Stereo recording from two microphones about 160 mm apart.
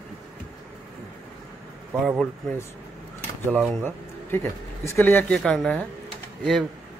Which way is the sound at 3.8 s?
15° left (ahead or behind).